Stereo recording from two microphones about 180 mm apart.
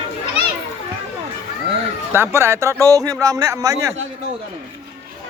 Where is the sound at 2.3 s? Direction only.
15° right (ahead or behind).